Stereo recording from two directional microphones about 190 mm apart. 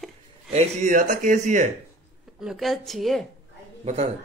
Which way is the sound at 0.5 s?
40° right (ahead or behind).